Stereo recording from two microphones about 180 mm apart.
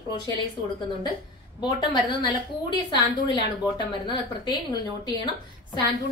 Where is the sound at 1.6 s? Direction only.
25° left (ahead or behind).